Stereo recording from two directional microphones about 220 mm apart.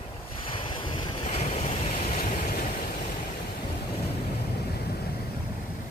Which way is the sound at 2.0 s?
45° left (ahead or behind).